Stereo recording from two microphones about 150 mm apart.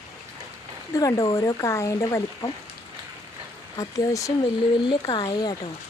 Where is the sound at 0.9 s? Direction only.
20° left (ahead or behind).